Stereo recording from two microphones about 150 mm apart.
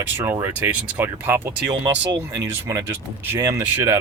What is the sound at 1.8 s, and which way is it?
Speech, 25° right (ahead or behind).